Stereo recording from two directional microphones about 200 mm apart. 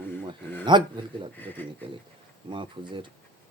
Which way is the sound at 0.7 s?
20° right (ahead or behind).